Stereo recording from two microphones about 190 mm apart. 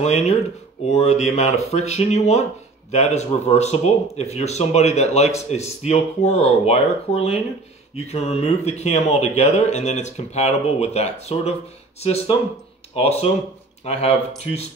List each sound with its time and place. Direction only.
0.0 s speech: 35° left (ahead or behind)